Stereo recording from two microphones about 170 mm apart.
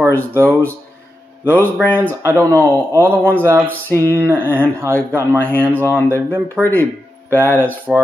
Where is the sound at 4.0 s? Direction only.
15° right (ahead or behind).